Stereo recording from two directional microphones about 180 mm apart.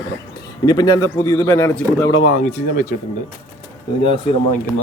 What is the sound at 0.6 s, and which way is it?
Speech, 20° left (ahead or behind).